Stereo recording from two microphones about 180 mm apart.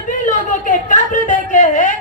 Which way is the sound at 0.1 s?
45° left (ahead or behind).